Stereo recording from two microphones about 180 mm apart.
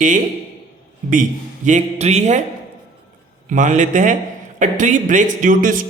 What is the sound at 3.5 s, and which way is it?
A man's voice, 45° right (ahead or behind).